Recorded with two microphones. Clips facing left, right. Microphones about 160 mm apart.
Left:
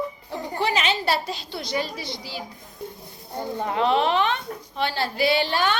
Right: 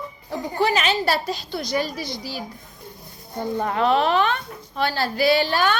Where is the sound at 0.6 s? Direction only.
25° left (ahead or behind).